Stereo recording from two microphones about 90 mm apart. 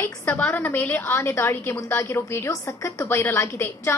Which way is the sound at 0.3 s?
20° left (ahead or behind).